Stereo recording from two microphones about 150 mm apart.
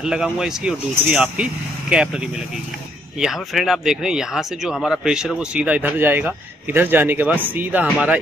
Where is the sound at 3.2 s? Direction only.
Centre (ahead or behind).